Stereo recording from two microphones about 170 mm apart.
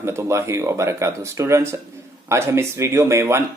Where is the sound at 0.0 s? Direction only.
15° right (ahead or behind).